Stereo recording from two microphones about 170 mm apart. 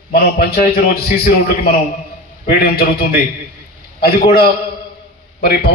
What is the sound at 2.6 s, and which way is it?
A man's voice, 60° left (ahead or behind).